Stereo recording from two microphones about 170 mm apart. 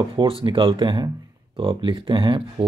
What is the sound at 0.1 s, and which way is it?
Speech, 30° right (ahead or behind).